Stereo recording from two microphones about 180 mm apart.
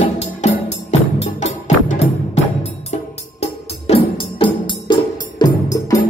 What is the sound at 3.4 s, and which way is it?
Music, 35° left (ahead or behind).